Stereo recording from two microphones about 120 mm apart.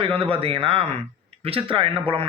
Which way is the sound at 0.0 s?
50° right (ahead or behind).